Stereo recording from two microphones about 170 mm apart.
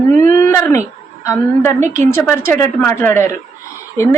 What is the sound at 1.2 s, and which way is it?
A woman's voice, 15° left (ahead or behind).